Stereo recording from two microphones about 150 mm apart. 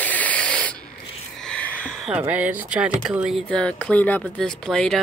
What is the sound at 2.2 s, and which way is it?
Speech, 10° right (ahead or behind).